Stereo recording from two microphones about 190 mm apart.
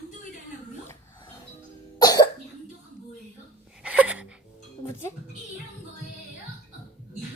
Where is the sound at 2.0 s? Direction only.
20° left (ahead or behind).